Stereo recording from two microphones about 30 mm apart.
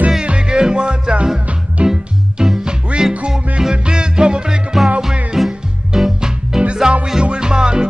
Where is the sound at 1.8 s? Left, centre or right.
Right.